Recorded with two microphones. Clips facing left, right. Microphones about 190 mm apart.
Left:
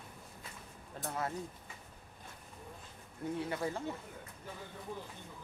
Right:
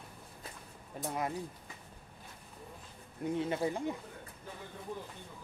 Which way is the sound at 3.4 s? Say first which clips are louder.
Right 4 dB; 20° right (ahead or behind).